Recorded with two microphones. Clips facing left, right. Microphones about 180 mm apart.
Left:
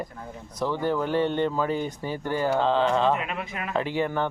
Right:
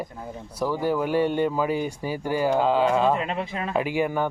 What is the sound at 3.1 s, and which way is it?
Speech, 30° right (ahead or behind).